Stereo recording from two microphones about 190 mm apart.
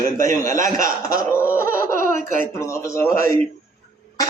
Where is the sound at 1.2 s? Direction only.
15° left (ahead or behind).